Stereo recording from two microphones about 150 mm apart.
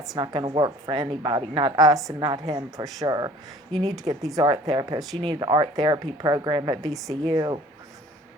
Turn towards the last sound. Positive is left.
turn(degrees=-25)  # may be behind; listen again after turning